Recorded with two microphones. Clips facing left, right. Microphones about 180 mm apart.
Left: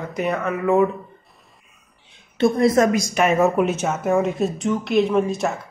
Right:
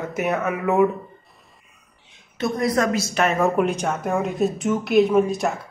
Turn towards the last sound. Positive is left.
turn(degrees=0)  # may be behind; listen again after turning